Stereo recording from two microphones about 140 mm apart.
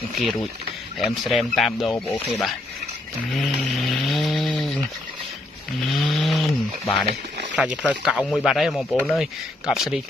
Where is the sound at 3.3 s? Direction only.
Centre (ahead or behind).